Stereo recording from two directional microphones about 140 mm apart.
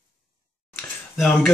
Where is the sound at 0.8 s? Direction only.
Centre (ahead or behind).